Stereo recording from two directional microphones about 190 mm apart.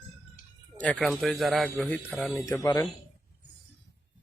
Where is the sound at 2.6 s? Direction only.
20° left (ahead or behind).